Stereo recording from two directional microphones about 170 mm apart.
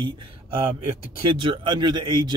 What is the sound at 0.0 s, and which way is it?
Speech, 30° right (ahead or behind).